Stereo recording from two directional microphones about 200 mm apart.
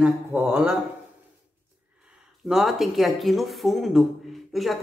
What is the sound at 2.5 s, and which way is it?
A woman's voice, centre (ahead or behind).